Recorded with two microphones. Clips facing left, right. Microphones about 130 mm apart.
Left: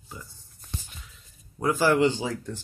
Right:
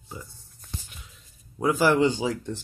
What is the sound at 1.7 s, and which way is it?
Speech, 15° right (ahead or behind).